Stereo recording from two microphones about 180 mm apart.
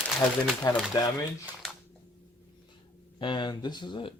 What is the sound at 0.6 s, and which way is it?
Speech, 20° left (ahead or behind).